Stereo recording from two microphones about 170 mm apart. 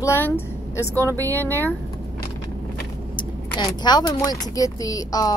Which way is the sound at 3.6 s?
25° left (ahead or behind).